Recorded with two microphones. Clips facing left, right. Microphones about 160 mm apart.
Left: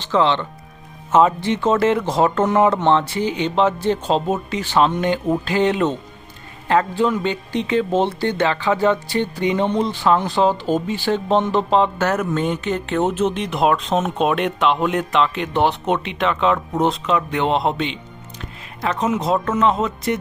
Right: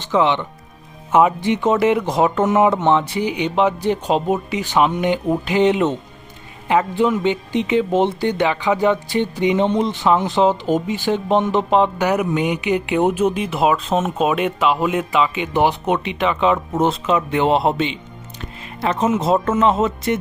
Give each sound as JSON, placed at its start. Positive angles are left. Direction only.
{"t": 0.1, "sound": "speech", "side_deg": -15}